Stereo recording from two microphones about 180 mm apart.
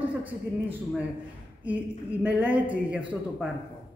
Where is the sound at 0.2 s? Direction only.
10° right (ahead or behind).